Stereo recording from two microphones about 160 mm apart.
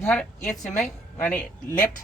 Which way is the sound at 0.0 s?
10° left (ahead or behind).